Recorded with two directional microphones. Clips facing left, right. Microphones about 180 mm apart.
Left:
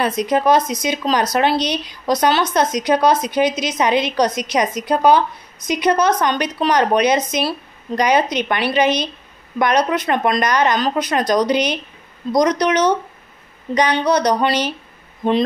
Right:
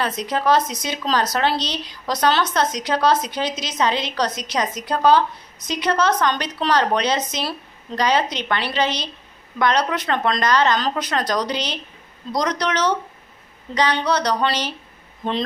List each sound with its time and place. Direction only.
0.0 s speech: 15° left (ahead or behind)